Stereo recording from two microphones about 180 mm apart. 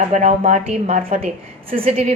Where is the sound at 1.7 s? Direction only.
50° right (ahead or behind).